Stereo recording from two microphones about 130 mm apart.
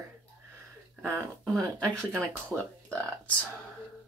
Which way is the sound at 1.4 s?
5° left (ahead or behind).